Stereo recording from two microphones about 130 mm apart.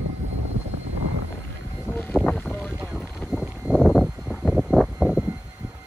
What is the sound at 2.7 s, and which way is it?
Clip-clop, 5° right (ahead or behind).